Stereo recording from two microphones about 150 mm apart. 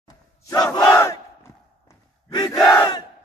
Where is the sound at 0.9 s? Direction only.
20° left (ahead or behind).